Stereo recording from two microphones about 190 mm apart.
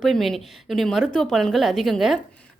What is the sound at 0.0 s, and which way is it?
A woman's voice, centre (ahead or behind).